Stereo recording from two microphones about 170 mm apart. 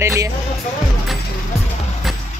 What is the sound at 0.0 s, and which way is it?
Speech, 15° right (ahead or behind).